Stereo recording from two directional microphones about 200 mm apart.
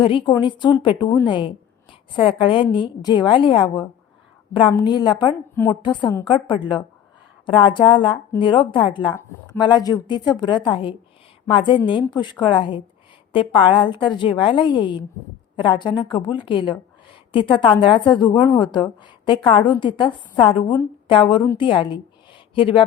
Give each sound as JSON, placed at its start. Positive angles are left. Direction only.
{"t": 0.0, "sound": "a woman's voice", "side_deg": 25}